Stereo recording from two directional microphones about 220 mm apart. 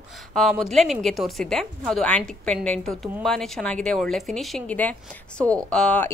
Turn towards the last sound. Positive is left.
turn(degrees=5)  # may be behind; listen again after turning